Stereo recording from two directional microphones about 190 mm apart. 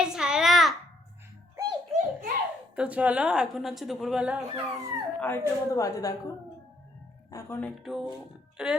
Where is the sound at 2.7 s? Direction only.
5° right (ahead or behind).